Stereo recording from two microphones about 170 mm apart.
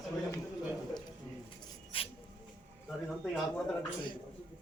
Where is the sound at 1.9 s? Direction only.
35° left (ahead or behind).